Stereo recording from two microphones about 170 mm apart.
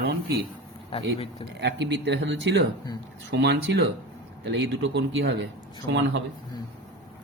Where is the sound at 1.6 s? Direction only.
90° right.